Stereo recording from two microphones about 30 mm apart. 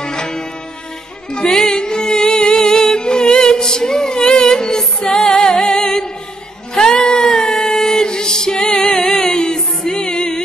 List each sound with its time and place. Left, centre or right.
0.0 s music: left
1.5 s music: centre
5.4 s humming: left
6.7 s a sound: left
7.4 s music: left